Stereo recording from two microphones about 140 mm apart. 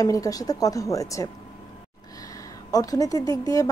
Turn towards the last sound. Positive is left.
turn(degrees=25)  # may be behind; listen again after turning